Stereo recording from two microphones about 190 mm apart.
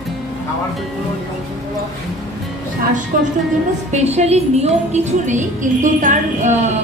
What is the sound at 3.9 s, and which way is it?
A woman's voice, 35° right (ahead or behind).